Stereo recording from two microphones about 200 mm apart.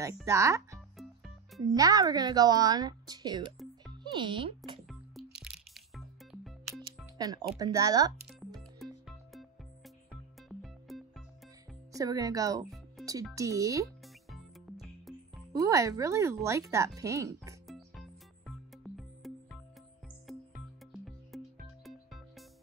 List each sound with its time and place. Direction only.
0.0 s speech: 15° right (ahead or behind)
0.9 s music: centre (ahead or behind)
1.6 s a woman's voice: 20° right (ahead or behind)
5.4 s music: centre (ahead or behind)
6.7 s speech: 20° right (ahead or behind)
8.5 s music: centre (ahead or behind)
11.9 s speech: 15° right (ahead or behind)
14.0 s music: centre (ahead or behind)
15.5 s speech: 15° right (ahead or behind)
17.6 s music: centre (ahead or behind)
20.9 s music: centre (ahead or behind)